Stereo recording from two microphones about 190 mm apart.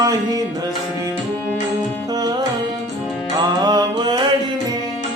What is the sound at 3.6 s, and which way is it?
Mantra, 20° right (ahead or behind).